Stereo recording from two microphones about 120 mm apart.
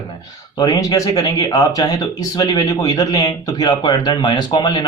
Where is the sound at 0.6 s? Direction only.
35° left (ahead or behind).